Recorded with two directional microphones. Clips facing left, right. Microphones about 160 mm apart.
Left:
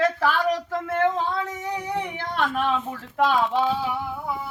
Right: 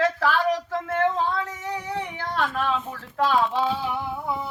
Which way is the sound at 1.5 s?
15° left (ahead or behind).